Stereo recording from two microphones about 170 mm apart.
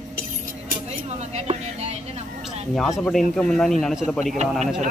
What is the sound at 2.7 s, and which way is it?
Speech, centre (ahead or behind).